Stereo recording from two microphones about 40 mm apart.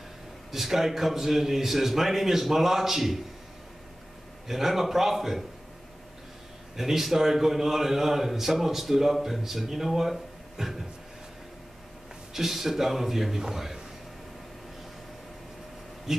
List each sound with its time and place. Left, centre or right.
0.5 s a man's voice: centre
4.5 s a man's voice: centre
6.8 s a man's voice: centre
12.4 s a man's voice: centre
16.1 s speech: centre